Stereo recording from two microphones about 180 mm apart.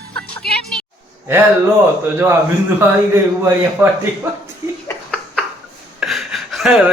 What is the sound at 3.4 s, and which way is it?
Speech, 15° right (ahead or behind).